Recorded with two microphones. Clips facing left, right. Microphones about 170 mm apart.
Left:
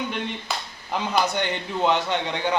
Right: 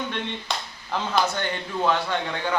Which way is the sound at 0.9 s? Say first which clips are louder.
Left 1 dB; 15° left (ahead or behind).